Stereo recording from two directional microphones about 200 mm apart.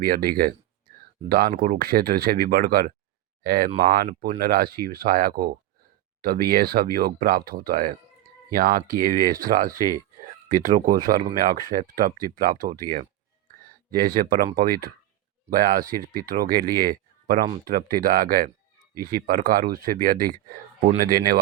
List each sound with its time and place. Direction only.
0.0 s speech: 50° right (ahead or behind)
13.9 s speech: 45° right (ahead or behind)